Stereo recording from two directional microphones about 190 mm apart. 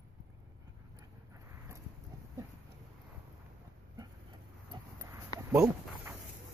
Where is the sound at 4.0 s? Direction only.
25° right (ahead or behind).